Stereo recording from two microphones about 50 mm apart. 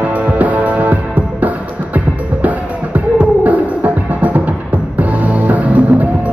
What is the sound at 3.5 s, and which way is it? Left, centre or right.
Music, right.